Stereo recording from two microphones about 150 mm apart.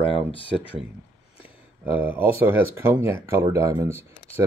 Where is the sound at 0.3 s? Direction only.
35° left (ahead or behind).